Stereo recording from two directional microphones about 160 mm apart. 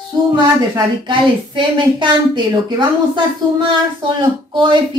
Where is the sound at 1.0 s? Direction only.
30° right (ahead or behind).